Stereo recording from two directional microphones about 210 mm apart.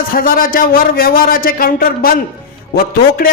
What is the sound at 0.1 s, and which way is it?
A man's voice, 45° left (ahead or behind).